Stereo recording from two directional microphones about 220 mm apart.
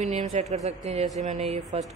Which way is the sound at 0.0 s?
30° right (ahead or behind).